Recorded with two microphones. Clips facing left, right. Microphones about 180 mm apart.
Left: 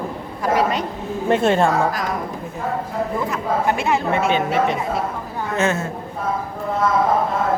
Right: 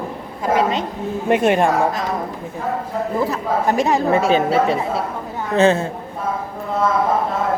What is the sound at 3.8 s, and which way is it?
A woman's voice, 40° right (ahead or behind).